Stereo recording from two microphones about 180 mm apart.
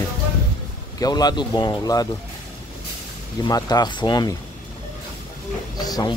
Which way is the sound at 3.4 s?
20° left (ahead or behind).